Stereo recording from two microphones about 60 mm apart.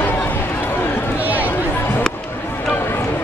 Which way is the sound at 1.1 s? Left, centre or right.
Right.